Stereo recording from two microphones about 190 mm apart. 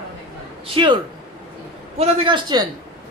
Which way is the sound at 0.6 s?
25° right (ahead or behind).